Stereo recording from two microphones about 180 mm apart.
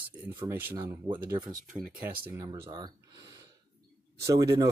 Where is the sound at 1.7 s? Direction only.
50° right (ahead or behind).